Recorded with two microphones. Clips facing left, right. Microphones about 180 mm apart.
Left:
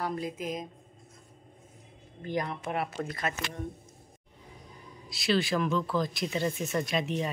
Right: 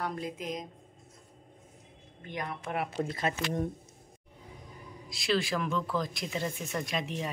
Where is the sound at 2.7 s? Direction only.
10° right (ahead or behind).